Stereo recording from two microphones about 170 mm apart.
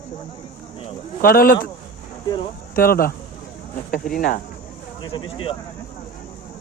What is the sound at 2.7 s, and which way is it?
Speech, 60° left (ahead or behind).